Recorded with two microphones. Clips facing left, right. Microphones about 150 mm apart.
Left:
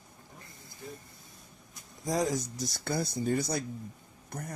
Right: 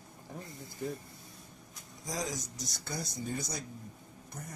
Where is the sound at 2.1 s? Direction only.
60° left (ahead or behind).